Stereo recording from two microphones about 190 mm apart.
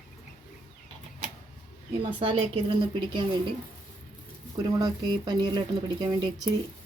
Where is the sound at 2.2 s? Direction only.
25° right (ahead or behind).